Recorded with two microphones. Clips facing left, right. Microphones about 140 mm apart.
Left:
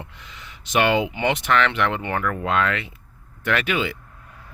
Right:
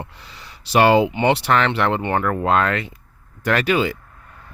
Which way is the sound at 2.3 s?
40° right (ahead or behind).